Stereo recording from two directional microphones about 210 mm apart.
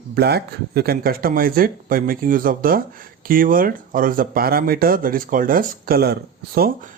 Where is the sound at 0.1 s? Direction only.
50° right (ahead or behind).